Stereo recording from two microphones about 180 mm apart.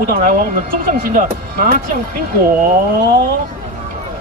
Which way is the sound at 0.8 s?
50° right (ahead or behind).